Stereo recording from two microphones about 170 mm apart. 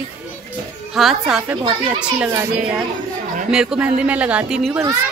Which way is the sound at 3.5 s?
5° right (ahead or behind).